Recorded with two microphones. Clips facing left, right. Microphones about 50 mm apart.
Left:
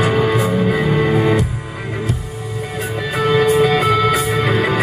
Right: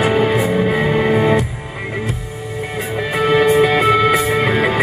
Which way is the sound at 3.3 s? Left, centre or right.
Right.